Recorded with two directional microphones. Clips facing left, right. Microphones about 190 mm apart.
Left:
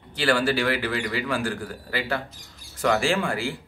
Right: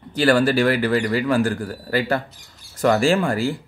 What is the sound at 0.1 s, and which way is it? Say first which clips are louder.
Speech: right 6 dB; 45° right (ahead or behind).